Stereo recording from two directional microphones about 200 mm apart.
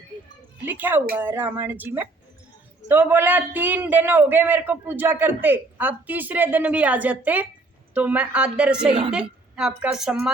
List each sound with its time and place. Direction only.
0.6 s a man's voice: 10° right (ahead or behind)
8.9 s a woman's voice: 25° right (ahead or behind)
9.1 s a woman's voice: 5° right (ahead or behind)